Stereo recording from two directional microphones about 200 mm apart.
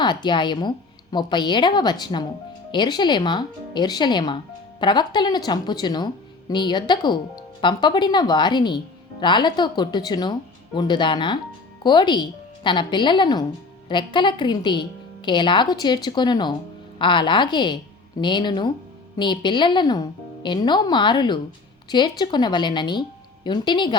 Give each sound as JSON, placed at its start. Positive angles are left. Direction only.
{"t": 0.0, "sound": "a woman's voice", "side_deg": 20}